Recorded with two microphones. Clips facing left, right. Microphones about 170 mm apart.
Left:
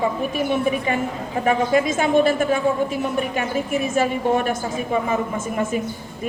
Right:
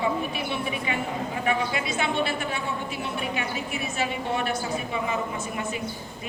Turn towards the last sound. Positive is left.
turn(degrees=45)  # may be behind; listen again after turning